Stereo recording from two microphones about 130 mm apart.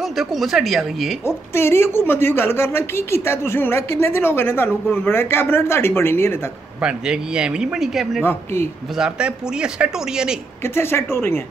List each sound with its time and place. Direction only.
0.2 s speech: centre (ahead or behind)
1.2 s a woman's voice: 20° left (ahead or behind)
6.8 s speech: 5° right (ahead or behind)
10.6 s a woman's voice: 20° left (ahead or behind)